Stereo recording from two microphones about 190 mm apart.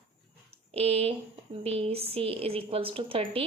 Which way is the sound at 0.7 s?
30° right (ahead or behind).